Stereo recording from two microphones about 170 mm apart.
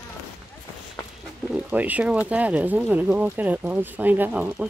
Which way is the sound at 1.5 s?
10° right (ahead or behind).